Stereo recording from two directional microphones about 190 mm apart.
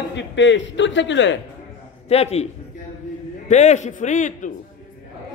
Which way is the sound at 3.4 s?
40° left (ahead or behind).